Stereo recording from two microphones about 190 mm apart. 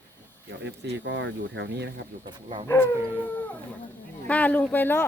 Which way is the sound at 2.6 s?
10° left (ahead or behind).